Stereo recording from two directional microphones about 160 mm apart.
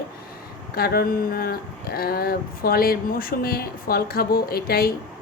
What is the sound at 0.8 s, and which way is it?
Speech, 70° left (ahead or behind).